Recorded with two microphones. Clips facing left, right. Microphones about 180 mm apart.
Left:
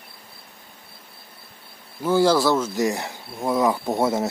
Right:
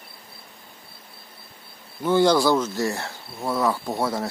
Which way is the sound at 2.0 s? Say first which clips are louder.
Even; 5° left (ahead or behind).